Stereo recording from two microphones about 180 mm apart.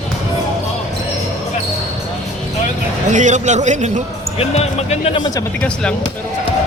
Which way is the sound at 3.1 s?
40° right (ahead or behind).